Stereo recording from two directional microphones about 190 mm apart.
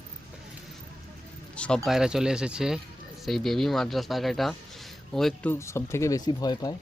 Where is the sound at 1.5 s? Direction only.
5° left (ahead or behind).